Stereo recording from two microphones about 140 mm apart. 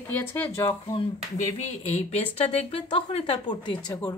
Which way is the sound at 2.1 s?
45° left (ahead or behind).